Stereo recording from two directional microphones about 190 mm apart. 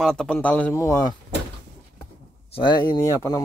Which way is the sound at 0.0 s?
Centre (ahead or behind).